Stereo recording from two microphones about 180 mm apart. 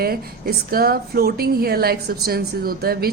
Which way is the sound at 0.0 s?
55° right (ahead or behind).